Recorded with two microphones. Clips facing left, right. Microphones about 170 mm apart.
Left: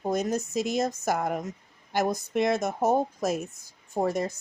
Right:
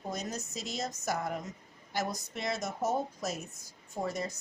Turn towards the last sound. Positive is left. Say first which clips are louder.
# left 8 dB
turn(degrees=50)  # may be behind; listen again after turning